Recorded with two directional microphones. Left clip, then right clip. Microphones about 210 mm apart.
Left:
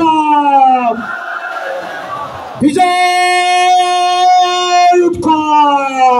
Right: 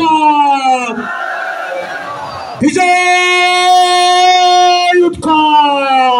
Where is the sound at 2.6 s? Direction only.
15° right (ahead or behind).